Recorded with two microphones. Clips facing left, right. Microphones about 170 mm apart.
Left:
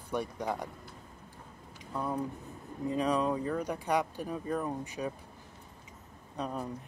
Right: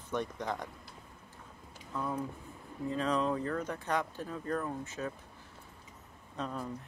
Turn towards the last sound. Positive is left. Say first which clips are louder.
# left 2 dB
turn(degrees=15)  # may be behind; listen again after turning